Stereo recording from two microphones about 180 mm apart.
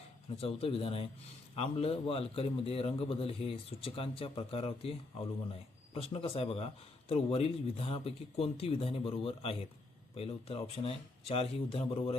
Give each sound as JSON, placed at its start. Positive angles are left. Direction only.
{"t": 0.3, "sound": "a man's voice", "side_deg": 30}